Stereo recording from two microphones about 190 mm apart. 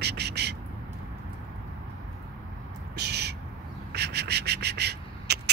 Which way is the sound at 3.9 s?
60° right (ahead or behind).